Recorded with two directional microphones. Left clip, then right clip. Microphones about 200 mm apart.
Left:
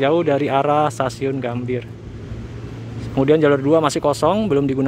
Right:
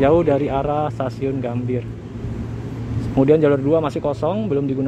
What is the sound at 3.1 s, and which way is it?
Speech, 5° left (ahead or behind).